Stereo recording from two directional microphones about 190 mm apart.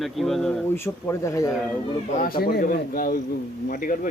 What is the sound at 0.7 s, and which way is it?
Speech, 15° left (ahead or behind).